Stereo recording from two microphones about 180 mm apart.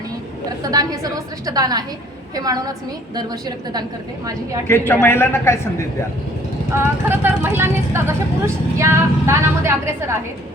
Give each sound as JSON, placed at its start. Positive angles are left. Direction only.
{"t": 0.6, "sound": "a woman's voice", "side_deg": -20}
{"t": 4.7, "sound": "a man's voice", "side_deg": 10}
{"t": 6.8, "sound": "speech", "side_deg": -10}